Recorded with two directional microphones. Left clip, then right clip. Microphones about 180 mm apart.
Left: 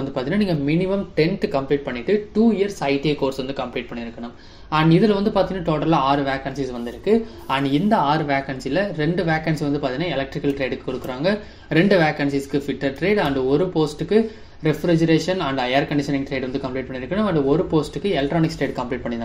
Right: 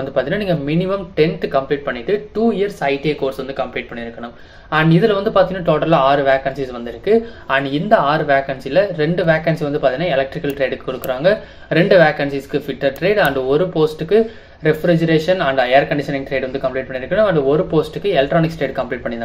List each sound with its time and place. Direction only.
0.1 s speech: 25° left (ahead or behind)
4.6 s speech: 25° left (ahead or behind)